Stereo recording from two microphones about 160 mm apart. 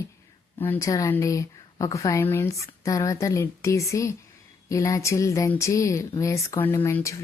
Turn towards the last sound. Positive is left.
turn(degrees=15)  # may be behind; listen again after turning